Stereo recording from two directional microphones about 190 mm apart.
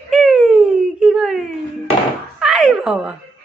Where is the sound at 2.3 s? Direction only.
Centre (ahead or behind).